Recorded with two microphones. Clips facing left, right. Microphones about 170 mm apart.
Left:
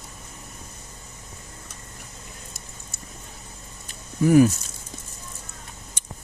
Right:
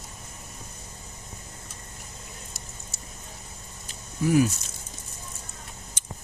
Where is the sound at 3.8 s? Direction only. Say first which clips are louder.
Left 5 dB; 50° left (ahead or behind).